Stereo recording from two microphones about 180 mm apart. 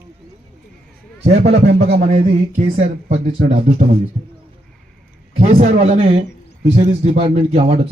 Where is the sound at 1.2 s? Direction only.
35° right (ahead or behind).